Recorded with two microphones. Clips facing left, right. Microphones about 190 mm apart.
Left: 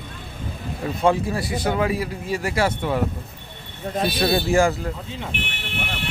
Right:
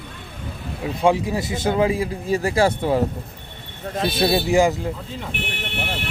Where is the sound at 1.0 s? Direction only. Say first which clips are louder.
Right 1 dB; 15° right (ahead or behind); by 3.0 s 35° right (ahead or behind).